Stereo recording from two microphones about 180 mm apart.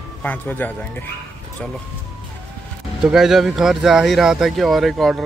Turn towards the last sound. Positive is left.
turn(degrees=0)  # may be behind; listen again after turning